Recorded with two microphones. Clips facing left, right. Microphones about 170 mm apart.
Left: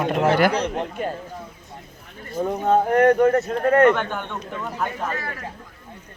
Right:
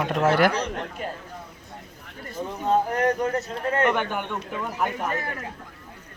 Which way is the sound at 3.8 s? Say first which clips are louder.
Left 5 dB; 10° right (ahead or behind).